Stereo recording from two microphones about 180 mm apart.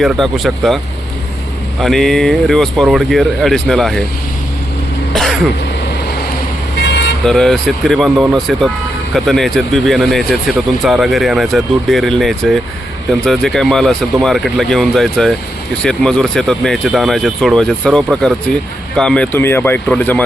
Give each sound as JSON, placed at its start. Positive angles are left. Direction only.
{"t": 0.0, "sound": "speech", "side_deg": 0}
{"t": 1.8, "sound": "speech", "side_deg": 0}
{"t": 5.1, "sound": "throat clearing", "side_deg": 0}
{"t": 6.7, "sound": "vehicle", "side_deg": 80}
{"t": 7.3, "sound": "speech", "side_deg": 5}